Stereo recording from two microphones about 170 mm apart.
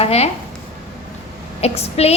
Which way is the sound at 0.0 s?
35° left (ahead or behind).